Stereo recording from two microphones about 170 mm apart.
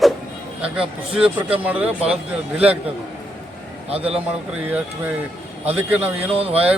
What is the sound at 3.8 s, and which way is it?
Speech, 35° right (ahead or behind).